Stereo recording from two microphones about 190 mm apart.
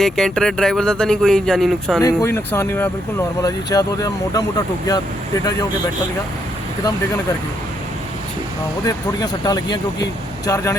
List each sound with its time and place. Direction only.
0.0 s speech: centre (ahead or behind)
2.0 s speech: 15° left (ahead or behind)
8.8 s speech: 20° left (ahead or behind)